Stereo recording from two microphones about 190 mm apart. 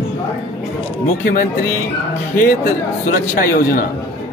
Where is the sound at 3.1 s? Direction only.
45° left (ahead or behind).